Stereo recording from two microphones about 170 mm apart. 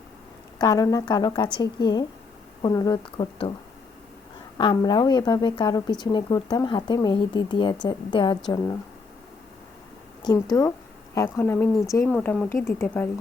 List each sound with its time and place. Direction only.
0.6 s a woman's voice: 20° left (ahead or behind)
4.5 s a woman's voice: 25° left (ahead or behind)
10.5 s a woman's voice: 15° left (ahead or behind)